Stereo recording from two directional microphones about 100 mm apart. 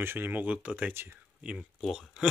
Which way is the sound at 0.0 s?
20° right (ahead or behind).